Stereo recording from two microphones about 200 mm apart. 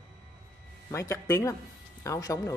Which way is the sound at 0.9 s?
15° left (ahead or behind).